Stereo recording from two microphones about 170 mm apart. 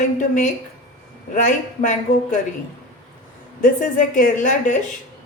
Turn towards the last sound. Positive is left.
turn(degrees=45)  # may be behind; listen again after turning